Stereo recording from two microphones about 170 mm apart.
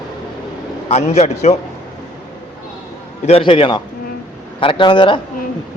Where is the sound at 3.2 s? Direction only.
35° left (ahead or behind).